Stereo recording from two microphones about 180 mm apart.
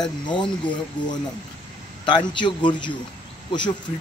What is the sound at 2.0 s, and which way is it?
Speech, 25° left (ahead or behind).